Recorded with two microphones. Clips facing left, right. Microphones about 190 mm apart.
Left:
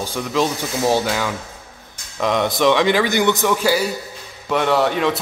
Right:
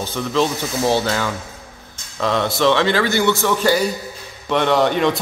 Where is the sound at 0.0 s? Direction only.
10° left (ahead or behind).